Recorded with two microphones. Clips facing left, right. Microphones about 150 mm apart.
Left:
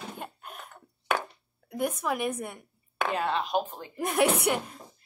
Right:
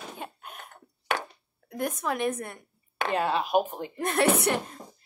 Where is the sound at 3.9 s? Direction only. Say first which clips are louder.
Right 1 dB; 10° left (ahead or behind).